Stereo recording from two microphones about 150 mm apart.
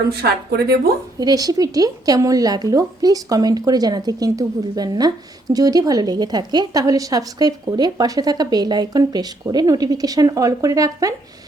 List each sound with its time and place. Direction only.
0.2 s speech: 90° right
1.2 s a woman's voice: 25° right (ahead or behind)